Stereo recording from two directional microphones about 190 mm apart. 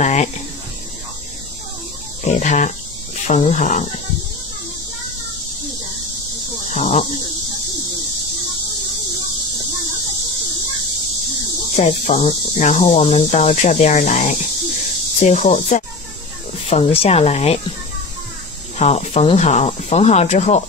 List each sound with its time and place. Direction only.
0.0 s a sound: 35° left (ahead or behind)
2.2 s speech: 40° left (ahead or behind)
6.7 s speech: 40° left (ahead or behind)
11.7 s speech: 35° left (ahead or behind)
18.8 s speech: 35° left (ahead or behind)